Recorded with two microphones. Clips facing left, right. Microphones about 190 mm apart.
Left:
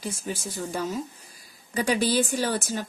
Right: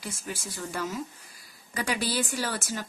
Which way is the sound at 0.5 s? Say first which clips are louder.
Left 3 dB; 20° left (ahead or behind).